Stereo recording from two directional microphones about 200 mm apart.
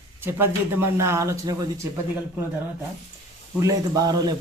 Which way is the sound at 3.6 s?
20° right (ahead or behind).